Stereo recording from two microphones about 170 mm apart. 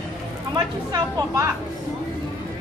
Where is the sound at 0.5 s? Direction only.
20° right (ahead or behind).